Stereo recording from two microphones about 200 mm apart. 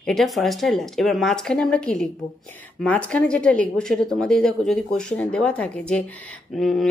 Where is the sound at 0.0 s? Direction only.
Centre (ahead or behind).